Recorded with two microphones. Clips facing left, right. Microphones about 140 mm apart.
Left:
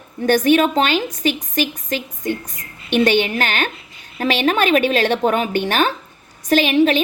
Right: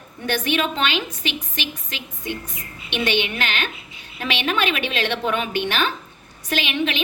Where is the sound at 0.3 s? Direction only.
45° left (ahead or behind).